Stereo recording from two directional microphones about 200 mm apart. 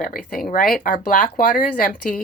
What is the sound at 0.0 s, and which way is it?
Speech, 45° left (ahead or behind).